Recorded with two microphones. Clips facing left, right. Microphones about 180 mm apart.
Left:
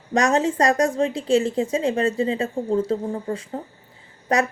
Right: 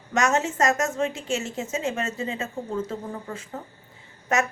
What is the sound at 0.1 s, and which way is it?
A woman's voice, 35° left (ahead or behind).